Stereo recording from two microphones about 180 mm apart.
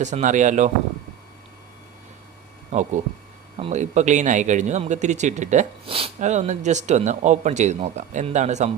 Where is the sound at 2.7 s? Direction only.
40° right (ahead or behind).